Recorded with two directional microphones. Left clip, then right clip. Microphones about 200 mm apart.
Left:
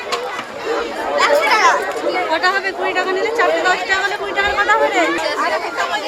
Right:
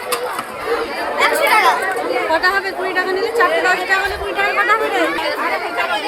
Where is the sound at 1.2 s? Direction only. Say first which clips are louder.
Even; 35° right (ahead or behind).